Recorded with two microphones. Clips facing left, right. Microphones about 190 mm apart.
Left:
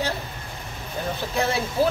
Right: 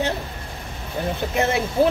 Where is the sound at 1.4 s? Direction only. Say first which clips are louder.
Right 3 dB; 20° right (ahead or behind).